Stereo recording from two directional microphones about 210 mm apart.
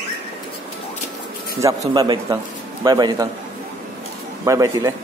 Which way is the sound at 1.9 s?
20° right (ahead or behind).